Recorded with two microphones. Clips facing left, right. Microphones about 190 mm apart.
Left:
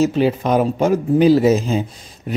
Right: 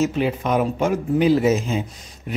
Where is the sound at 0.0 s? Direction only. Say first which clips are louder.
Left 5 dB; 35° left (ahead or behind).